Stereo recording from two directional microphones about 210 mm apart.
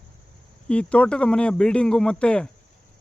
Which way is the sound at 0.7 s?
5° left (ahead or behind).